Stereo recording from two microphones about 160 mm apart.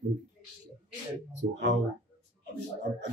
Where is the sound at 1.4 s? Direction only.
90° right.